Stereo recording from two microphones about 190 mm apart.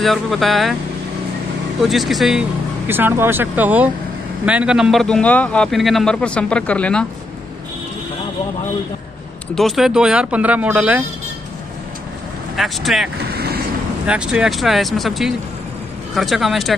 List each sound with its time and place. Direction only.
0.0 s a man's voice: centre (ahead or behind)
1.8 s a man's voice: centre (ahead or behind)
9.6 s a man's voice: centre (ahead or behind)
12.5 s a man's voice: centre (ahead or behind)
13.3 s vehicle: 55° right (ahead or behind)
14.0 s a man's voice: 5° right (ahead or behind)